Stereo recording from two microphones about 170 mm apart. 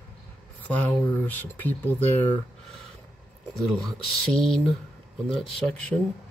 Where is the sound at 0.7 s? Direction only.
10° left (ahead or behind).